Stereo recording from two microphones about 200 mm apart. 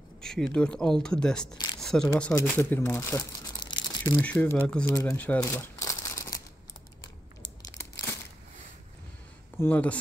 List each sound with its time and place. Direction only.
0.2 s speech: 5° left (ahead or behind)
1.8 s a sound: centre (ahead or behind)
2.0 s speech: 10° left (ahead or behind)
3.8 s crumpling: 20° left (ahead or behind)
4.2 s speech: 10° left (ahead or behind)
5.0 s a sound: 10° left (ahead or behind)
7.7 s crumpling: 15° left (ahead or behind)
9.6 s speech: 10° left (ahead or behind)